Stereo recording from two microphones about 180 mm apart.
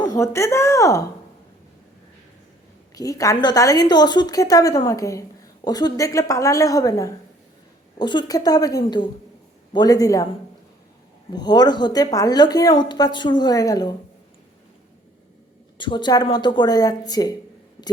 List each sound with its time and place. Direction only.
0.0 s speech: 20° left (ahead or behind)
2.9 s a woman's voice: 20° left (ahead or behind)
11.3 s a woman's voice: 25° left (ahead or behind)
15.8 s a woman's voice: 25° left (ahead or behind)